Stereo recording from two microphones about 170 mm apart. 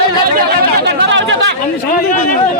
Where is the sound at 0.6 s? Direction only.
80° right.